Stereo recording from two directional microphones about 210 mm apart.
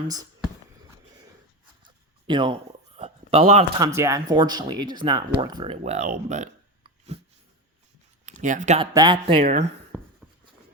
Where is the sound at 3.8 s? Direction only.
15° right (ahead or behind); by 6.5 s 35° right (ahead or behind).